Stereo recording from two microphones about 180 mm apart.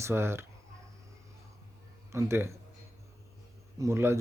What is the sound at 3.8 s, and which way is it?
Speech, 15° right (ahead or behind).